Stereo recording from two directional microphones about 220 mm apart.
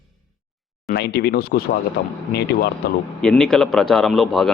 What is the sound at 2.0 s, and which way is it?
Speech, 45° left (ahead or behind).